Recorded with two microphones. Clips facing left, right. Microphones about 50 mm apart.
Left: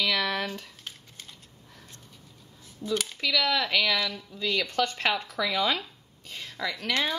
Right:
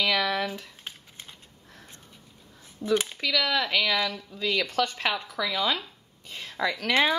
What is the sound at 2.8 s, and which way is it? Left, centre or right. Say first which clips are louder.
Speech: right 4 dB; right.